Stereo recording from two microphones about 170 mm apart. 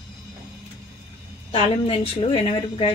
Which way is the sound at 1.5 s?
35° left (ahead or behind).